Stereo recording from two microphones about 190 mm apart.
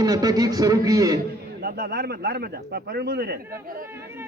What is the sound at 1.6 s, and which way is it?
A man's voice, 55° right (ahead or behind).